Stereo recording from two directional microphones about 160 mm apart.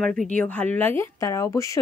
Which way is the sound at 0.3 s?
10° left (ahead or behind).